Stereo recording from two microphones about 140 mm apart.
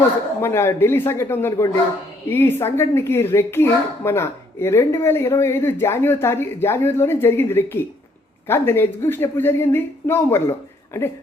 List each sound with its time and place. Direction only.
0.4 s a woman's voice: 15° left (ahead or behind)